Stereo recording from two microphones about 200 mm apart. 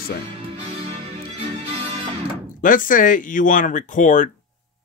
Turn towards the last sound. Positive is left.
turn(degrees=40)  # may be behind; listen again after turning